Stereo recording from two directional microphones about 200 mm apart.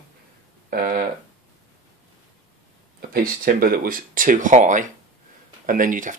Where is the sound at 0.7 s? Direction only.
45° right (ahead or behind).